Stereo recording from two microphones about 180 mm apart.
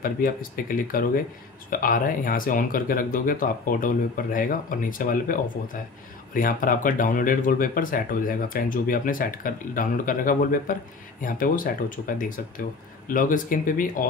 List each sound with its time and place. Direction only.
0.0 s speech: 50° left (ahead or behind)